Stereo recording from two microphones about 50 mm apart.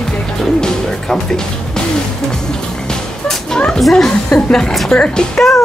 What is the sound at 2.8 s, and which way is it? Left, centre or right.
Music, centre.